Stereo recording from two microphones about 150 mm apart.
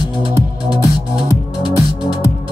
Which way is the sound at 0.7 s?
25° left (ahead or behind).